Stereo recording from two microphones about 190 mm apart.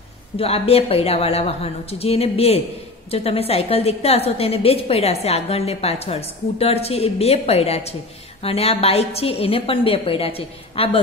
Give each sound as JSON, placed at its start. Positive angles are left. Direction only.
{"t": 0.4, "sound": "a woman's voice", "side_deg": 30}